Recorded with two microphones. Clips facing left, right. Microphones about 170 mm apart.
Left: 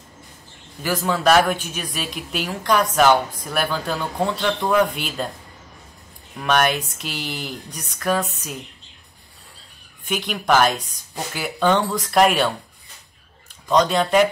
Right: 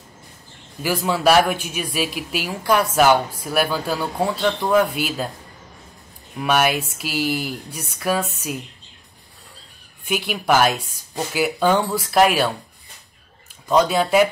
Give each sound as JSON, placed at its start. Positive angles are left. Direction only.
{"t": 0.8, "sound": "speech", "side_deg": -10}
{"t": 6.4, "sound": "speech", "side_deg": -5}
{"t": 10.0, "sound": "speech", "side_deg": -10}
{"t": 13.7, "sound": "speech", "side_deg": -5}